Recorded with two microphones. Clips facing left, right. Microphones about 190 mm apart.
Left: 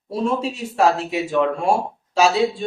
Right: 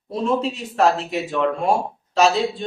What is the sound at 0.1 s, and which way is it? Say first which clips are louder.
Speech: right 1 dB; 10° left (ahead or behind).